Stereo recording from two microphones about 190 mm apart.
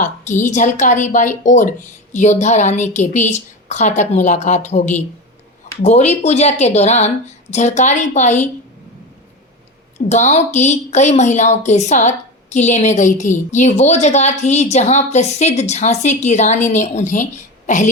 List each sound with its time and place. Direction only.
0.4 s a woman's voice: 40° left (ahead or behind)
10.1 s a woman's voice: 35° left (ahead or behind)